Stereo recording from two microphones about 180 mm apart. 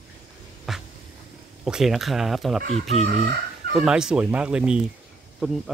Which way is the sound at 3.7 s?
5° right (ahead or behind).